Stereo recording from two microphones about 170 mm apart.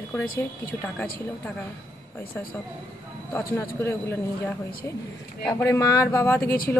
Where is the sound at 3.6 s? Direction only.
15° left (ahead or behind).